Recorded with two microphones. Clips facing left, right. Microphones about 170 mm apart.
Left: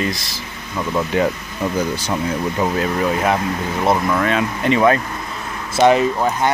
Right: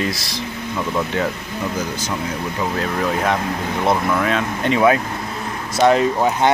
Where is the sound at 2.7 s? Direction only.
5° left (ahead or behind).